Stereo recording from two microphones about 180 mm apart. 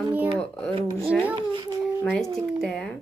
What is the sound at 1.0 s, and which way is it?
Speech, centre (ahead or behind).